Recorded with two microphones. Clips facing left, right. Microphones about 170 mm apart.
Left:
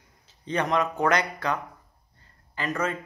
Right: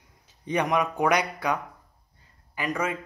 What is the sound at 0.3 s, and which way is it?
Speech, 15° right (ahead or behind).